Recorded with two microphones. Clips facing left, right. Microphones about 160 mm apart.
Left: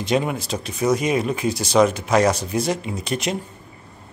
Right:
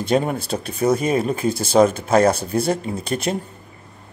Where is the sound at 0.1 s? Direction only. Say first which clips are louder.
Right 2 dB; 45° right (ahead or behind).